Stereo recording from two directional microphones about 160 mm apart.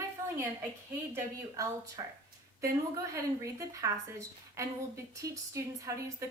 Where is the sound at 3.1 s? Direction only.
20° right (ahead or behind).